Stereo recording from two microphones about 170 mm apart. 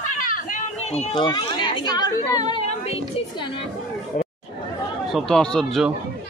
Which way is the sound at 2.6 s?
40° left (ahead or behind).